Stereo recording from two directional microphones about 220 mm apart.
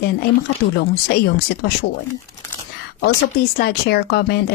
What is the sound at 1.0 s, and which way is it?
Speech, 45° left (ahead or behind).